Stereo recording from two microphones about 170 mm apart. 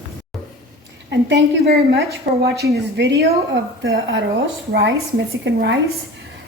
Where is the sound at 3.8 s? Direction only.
90° right.